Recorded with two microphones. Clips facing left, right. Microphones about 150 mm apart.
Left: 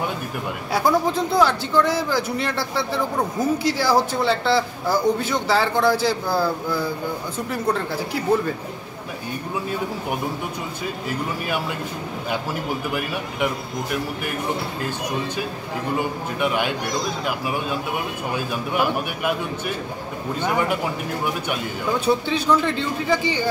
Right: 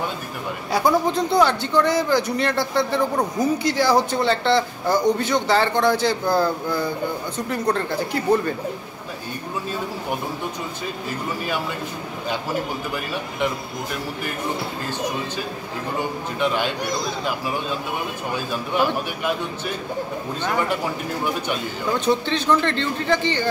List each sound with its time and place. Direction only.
0.7 s speech: centre (ahead or behind)
16.3 s speech: 10° left (ahead or behind)
20.4 s speech: 10° left (ahead or behind)
22.0 s speech: 10° left (ahead or behind)